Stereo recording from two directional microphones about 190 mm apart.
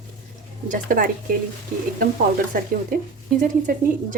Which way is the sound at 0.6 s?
45° right (ahead or behind).